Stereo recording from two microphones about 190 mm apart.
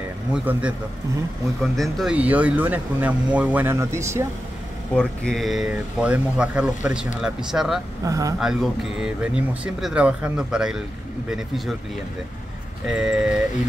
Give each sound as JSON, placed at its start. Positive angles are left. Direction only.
{"t": 0.3, "sound": "speech", "side_deg": -5}
{"t": 4.9, "sound": "speech", "side_deg": 5}
{"t": 8.0, "sound": "speech", "side_deg": -20}
{"t": 8.4, "sound": "speech", "side_deg": -5}
{"t": 12.8, "sound": "speech", "side_deg": -5}